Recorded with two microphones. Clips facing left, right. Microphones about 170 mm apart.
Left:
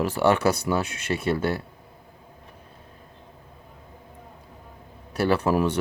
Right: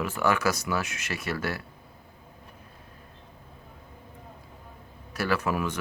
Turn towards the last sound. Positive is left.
turn(degrees=35)  # may be behind; listen again after turning